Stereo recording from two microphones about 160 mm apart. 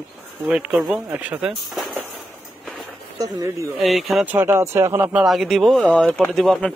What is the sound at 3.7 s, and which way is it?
Speech, centre (ahead or behind).